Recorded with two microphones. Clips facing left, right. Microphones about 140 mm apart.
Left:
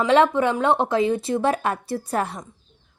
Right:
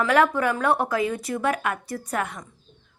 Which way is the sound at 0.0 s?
25° left (ahead or behind).